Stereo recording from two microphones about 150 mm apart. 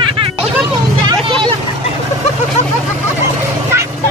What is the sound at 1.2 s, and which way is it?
Vehicle, 35° right (ahead or behind).